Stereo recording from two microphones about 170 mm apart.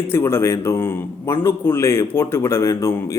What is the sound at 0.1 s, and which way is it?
A man's voice, 15° left (ahead or behind).